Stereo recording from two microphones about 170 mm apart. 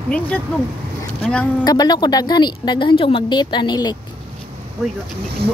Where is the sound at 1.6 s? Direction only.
25° left (ahead or behind).